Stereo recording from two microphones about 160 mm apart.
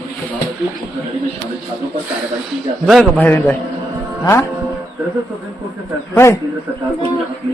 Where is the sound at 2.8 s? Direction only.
5° left (ahead or behind).